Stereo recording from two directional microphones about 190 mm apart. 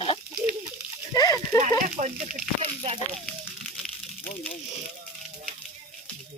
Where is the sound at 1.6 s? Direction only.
40° right (ahead or behind).